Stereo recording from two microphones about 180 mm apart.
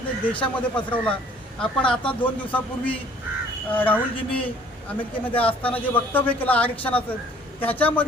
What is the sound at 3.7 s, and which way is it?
Speech, 10° left (ahead or behind).